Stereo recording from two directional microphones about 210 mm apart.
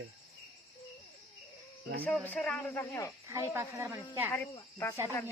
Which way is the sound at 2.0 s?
10° left (ahead or behind).